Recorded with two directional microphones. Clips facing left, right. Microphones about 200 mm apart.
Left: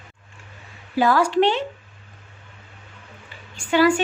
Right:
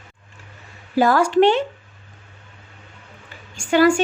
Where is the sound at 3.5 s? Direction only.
45° right (ahead or behind).